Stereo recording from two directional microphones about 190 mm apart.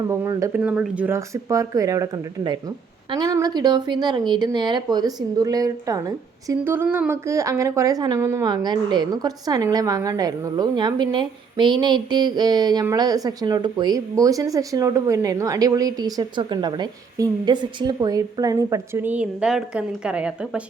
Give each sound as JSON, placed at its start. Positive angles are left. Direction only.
{"t": 0.1, "sound": "a woman's voice", "side_deg": -15}